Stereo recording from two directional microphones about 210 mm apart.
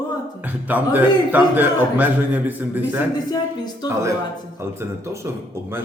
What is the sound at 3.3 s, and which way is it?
Speech, 20° left (ahead or behind).